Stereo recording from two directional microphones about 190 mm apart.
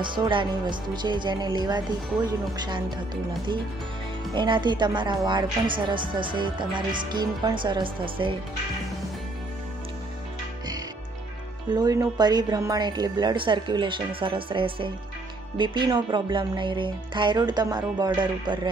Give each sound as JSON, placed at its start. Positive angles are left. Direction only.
{"t": 0.0, "sound": "a woman's voice", "side_deg": -25}
{"t": 4.4, "sound": "a woman's voice", "side_deg": -25}
{"t": 11.7, "sound": "a woman's voice", "side_deg": -20}